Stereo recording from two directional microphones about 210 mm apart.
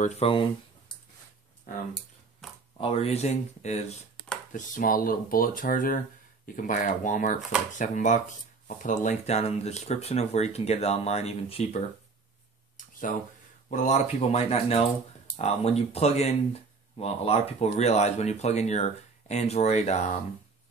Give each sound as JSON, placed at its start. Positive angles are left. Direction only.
{"t": 0.0, "sound": "speech", "side_deg": 30}
{"t": 1.7, "sound": "speech", "side_deg": 40}
{"t": 2.4, "sound": "a sound", "side_deg": 0}
{"t": 2.8, "sound": "speech", "side_deg": 30}
{"t": 12.8, "sound": "a sound", "side_deg": 40}
{"t": 13.7, "sound": "speech", "side_deg": 35}